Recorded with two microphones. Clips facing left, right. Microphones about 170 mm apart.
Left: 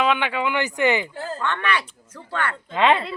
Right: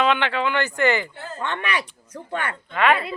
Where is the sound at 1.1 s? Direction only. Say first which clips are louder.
Left 5 dB; 40° left (ahead or behind).